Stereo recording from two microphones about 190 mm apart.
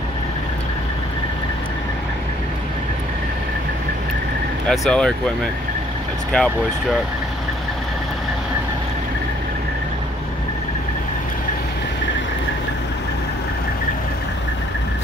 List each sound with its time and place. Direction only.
4.6 s speech: 5° left (ahead or behind)